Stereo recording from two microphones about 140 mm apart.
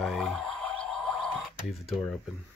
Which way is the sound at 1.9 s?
5° left (ahead or behind).